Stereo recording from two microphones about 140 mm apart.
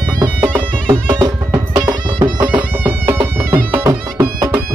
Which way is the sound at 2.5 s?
10° right (ahead or behind).